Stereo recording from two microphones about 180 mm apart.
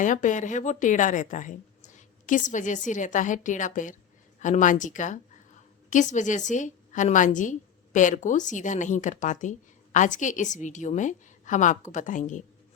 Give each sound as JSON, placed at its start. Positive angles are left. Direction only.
{"t": 0.0, "sound": "speech", "side_deg": 45}